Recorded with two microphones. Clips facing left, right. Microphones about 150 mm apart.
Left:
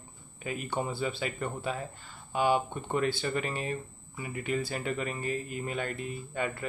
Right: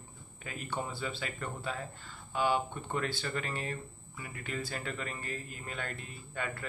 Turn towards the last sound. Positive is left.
turn(degrees=15)  # may be behind; listen again after turning